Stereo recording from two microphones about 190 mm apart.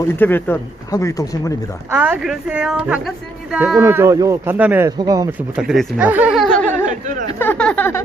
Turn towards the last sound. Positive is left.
turn(degrees=10)  # may be behind; listen again after turning